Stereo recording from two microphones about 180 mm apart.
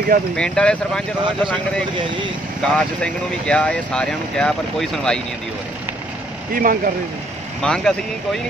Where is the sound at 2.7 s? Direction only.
5° left (ahead or behind).